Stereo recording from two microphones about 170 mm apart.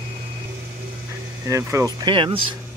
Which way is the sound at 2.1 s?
30° right (ahead or behind).